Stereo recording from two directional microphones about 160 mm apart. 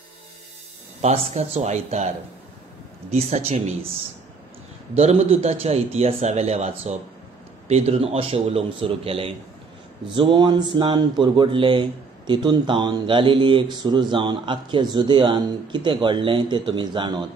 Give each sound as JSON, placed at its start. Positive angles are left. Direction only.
{"t": 1.0, "sound": "a man's voice", "side_deg": -45}
{"t": 3.1, "sound": "a man's voice", "side_deg": -45}
{"t": 4.9, "sound": "a man's voice", "side_deg": -45}